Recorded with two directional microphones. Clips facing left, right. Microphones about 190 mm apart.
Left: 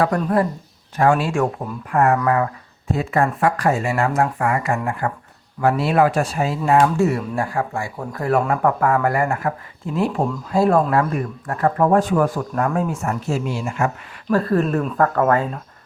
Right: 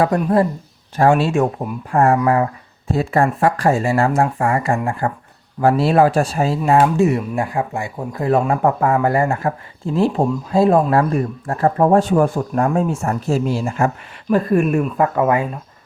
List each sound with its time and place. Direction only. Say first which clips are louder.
0.0 s speech: right 3 dB; 25° right (ahead or behind)
6.6 s speech: right 1 dB; 25° right (ahead or behind)
14.3 s speech: right 3 dB; 15° right (ahead or behind)